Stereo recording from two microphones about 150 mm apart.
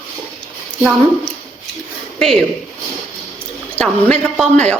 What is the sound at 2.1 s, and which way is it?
Speech, 5° left (ahead or behind).